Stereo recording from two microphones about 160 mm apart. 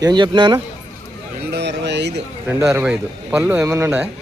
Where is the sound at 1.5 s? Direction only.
90° right.